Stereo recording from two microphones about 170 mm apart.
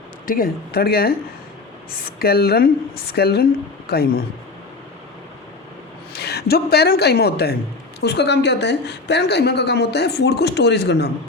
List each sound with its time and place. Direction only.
0.3 s a woman's voice: 60° left (ahead or behind)
2.1 s a woman's voice: 65° left (ahead or behind)
6.1 s speech: 70° left (ahead or behind)